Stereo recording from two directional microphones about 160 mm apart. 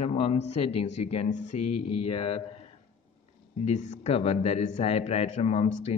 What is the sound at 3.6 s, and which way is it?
A man's voice, 50° left (ahead or behind).